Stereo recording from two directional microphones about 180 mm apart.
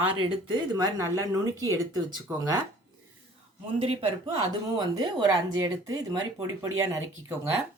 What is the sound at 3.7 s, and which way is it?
A man's voice, 30° right (ahead or behind).